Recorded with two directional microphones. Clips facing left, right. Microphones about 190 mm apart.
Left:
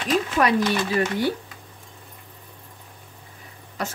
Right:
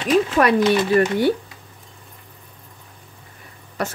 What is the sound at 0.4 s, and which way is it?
Speech, 55° right (ahead or behind).